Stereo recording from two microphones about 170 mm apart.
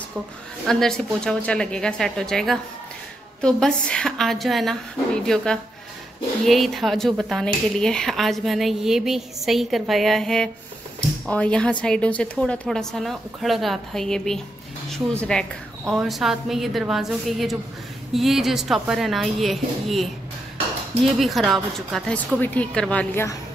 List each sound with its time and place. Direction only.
0.7 s speech: 5° left (ahead or behind)
21.2 s a woman's voice: centre (ahead or behind)